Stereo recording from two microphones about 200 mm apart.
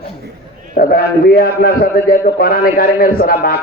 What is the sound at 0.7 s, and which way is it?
A man's voice, 50° left (ahead or behind).